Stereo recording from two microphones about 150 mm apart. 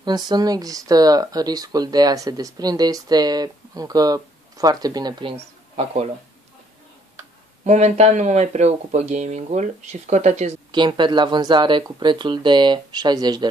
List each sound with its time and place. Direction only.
0.0 s speech: 30° right (ahead or behind)
5.3 s speech: 40° right (ahead or behind)
7.6 s speech: 45° right (ahead or behind)
10.7 s speech: 30° right (ahead or behind)